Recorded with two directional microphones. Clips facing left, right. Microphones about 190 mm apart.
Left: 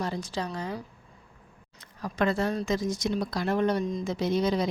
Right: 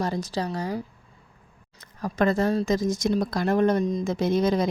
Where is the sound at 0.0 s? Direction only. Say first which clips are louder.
Right 4 dB; 40° right (ahead or behind).